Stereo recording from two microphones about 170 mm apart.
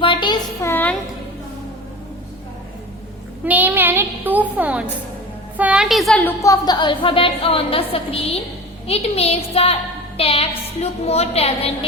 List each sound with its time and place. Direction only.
0.0 s a sound: 30° left (ahead or behind)
0.6 s music: 10° left (ahead or behind)
3.4 s a child's voice: 10° right (ahead or behind); by 11.9 s 35° left (ahead or behind)